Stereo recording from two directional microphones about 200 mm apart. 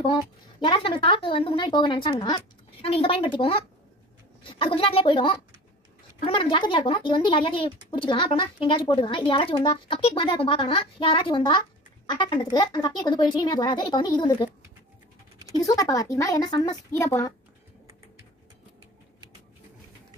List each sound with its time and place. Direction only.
0.0 s speech: 25° left (ahead or behind)
15.5 s a woman's voice: 15° left (ahead or behind)